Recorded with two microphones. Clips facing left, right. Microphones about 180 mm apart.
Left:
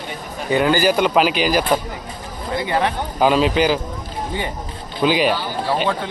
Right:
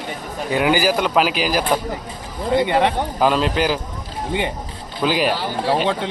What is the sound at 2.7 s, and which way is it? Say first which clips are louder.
Speech: right 2 dB; 20° right (ahead or behind).